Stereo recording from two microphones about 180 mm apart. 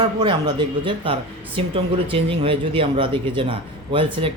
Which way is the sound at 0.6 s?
25° right (ahead or behind).